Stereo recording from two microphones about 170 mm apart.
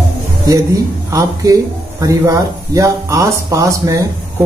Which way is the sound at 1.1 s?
20° right (ahead or behind).